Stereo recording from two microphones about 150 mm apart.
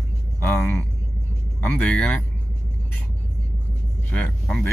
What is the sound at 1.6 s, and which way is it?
Speech, 10° left (ahead or behind).